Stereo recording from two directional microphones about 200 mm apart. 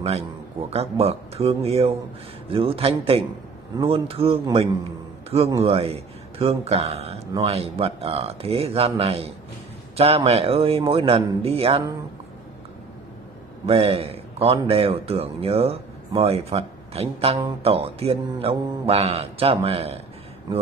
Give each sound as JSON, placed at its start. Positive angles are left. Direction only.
{"t": 0.0, "sound": "a man's voice", "side_deg": -30}
{"t": 13.7, "sound": "a man's voice", "side_deg": -30}